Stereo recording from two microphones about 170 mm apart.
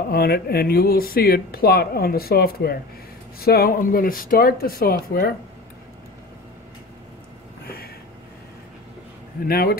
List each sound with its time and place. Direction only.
0.1 s speech: 65° left (ahead or behind)
7.6 s a sound: 65° left (ahead or behind)
9.5 s speech: 60° left (ahead or behind)